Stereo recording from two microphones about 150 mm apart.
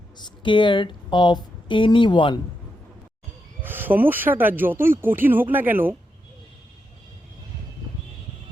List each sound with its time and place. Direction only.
0.2 s speech: 30° left (ahead or behind)
3.6 s speech: 15° right (ahead or behind)